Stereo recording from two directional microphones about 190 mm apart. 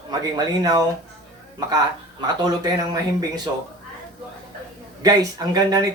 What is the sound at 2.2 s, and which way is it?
Speech, 20° right (ahead or behind).